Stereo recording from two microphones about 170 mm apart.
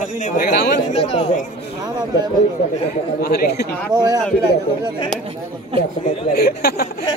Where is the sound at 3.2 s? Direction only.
70° left (ahead or behind).